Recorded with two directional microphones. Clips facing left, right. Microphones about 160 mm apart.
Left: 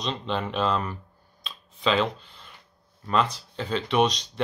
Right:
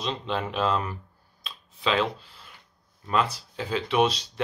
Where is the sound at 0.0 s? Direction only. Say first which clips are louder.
Even; 5° right (ahead or behind).